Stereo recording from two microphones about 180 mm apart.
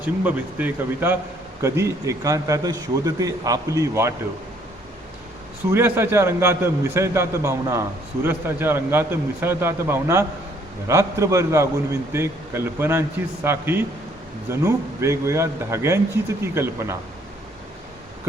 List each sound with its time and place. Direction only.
0.0 s a man's voice: 10° right (ahead or behind)
5.6 s a man's voice: 10° right (ahead or behind)